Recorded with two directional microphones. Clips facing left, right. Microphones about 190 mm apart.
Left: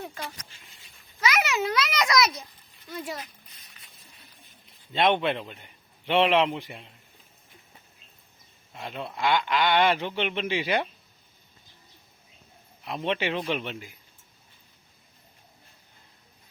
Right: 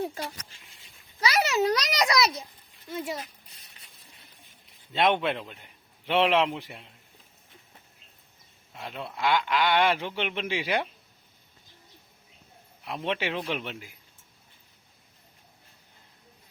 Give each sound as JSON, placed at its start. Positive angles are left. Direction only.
{"t": 1.2, "sound": "a child's voice", "side_deg": -35}
{"t": 4.9, "sound": "a man's voice", "side_deg": -5}
{"t": 8.7, "sound": "a man's voice", "side_deg": 0}
{"t": 12.8, "sound": "a man's voice", "side_deg": -5}